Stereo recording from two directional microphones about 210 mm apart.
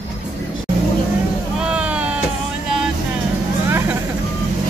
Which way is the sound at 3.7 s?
10° right (ahead or behind).